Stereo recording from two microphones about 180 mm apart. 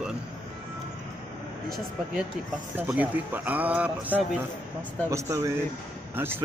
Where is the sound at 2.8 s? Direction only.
10° right (ahead or behind).